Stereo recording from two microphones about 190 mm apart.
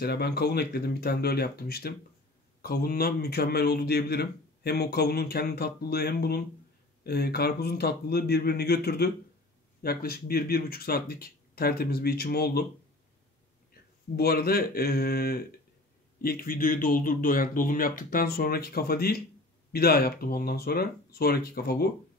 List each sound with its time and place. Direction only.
0.0 s a man's voice: 55° left (ahead or behind)
14.1 s a man's voice: 55° left (ahead or behind)